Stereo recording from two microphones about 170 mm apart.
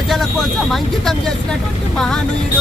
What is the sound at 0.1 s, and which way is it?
Speech, centre (ahead or behind).